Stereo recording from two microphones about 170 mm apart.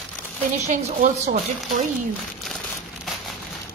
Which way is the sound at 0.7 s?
45° right (ahead or behind).